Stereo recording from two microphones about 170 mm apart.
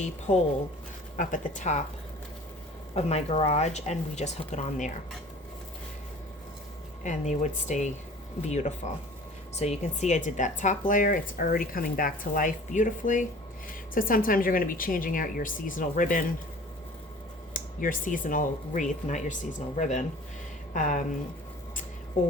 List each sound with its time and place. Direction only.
1.1 s speech: 50° left (ahead or behind)
2.9 s speech: 40° left (ahead or behind)
7.0 s speech: 45° left (ahead or behind)
17.5 s speech: 50° left (ahead or behind)